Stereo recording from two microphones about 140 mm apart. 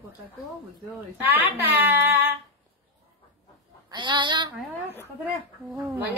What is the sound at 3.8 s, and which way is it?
Speech, 35° right (ahead or behind).